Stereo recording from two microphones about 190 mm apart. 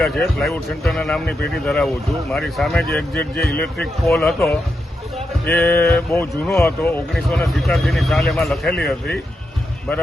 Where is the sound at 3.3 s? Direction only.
55° left (ahead or behind).